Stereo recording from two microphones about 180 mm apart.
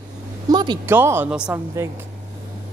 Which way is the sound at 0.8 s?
10° right (ahead or behind).